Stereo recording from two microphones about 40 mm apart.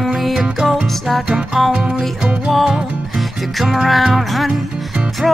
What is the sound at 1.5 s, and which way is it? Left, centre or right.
Music, centre.